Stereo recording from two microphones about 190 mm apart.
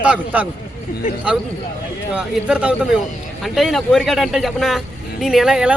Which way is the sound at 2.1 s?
5° right (ahead or behind).